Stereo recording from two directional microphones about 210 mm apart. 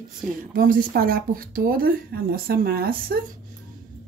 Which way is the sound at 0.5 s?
40° right (ahead or behind).